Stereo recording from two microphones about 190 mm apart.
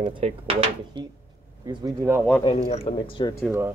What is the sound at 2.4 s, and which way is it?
Speech, 35° left (ahead or behind).